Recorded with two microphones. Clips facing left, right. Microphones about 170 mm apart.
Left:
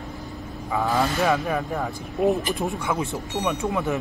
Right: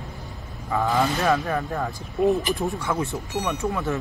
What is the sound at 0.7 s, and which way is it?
Speech, centre (ahead or behind).